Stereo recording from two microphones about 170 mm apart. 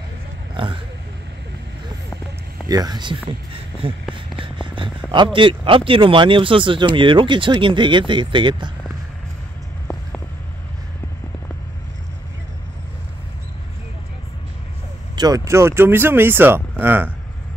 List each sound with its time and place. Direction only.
2.7 s speech: 25° right (ahead or behind)
4.1 s a sound: 30° right (ahead or behind)
5.1 s speech: 30° right (ahead or behind)
15.1 s speech: 20° right (ahead or behind)